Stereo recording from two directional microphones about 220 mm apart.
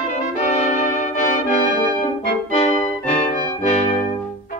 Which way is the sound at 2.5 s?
30° left (ahead or behind).